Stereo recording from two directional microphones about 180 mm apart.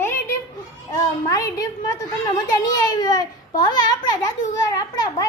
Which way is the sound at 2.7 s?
20° left (ahead or behind).